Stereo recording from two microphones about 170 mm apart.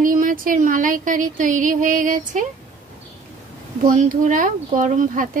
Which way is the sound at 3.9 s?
50° right (ahead or behind).